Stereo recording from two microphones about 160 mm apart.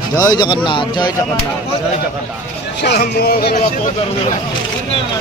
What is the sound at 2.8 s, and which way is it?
Speech, 80° left.